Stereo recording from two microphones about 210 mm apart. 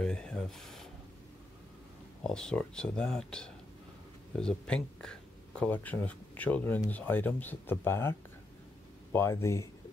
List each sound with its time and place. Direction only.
0.0 s speech: 5° left (ahead or behind)
2.2 s speech: 5° left (ahead or behind)